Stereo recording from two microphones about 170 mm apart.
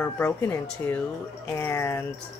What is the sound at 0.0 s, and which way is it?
Speech, 10° left (ahead or behind).